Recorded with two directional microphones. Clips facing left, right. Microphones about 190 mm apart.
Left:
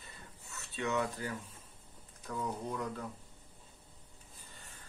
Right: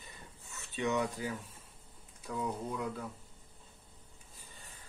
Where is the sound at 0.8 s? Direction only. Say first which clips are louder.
Right 2 dB; 15° right (ahead or behind).